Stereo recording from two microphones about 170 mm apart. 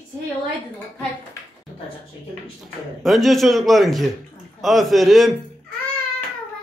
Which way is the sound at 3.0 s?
Centre (ahead or behind).